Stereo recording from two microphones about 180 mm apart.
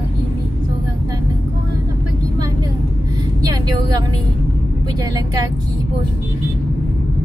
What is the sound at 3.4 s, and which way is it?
A woman's voice, 20° right (ahead or behind).